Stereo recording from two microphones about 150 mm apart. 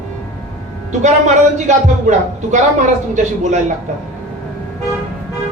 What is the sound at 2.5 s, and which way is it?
A man's voice, 55° right (ahead or behind).